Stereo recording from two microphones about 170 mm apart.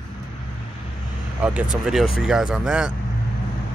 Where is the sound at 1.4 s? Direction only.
5° right (ahead or behind).